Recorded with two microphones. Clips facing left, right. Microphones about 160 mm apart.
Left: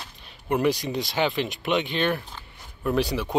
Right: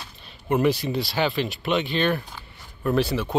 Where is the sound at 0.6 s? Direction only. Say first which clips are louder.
Right 2 dB; 15° left (ahead or behind).